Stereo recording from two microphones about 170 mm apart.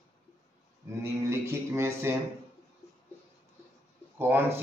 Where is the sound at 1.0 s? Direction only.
15° right (ahead or behind).